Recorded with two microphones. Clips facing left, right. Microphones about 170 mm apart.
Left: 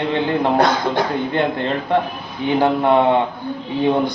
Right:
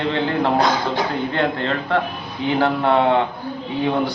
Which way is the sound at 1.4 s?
15° left (ahead or behind).